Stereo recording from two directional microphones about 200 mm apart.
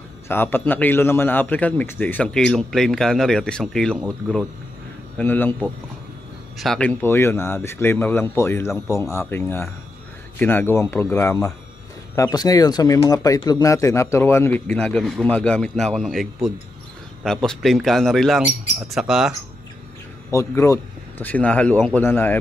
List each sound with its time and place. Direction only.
0.3 s a man's voice: 10° left (ahead or behind)
5.1 s a man's voice: 10° left (ahead or behind)
6.6 s a man's voice: 5° left (ahead or behind)
20.2 s a man's voice: 15° left (ahead or behind)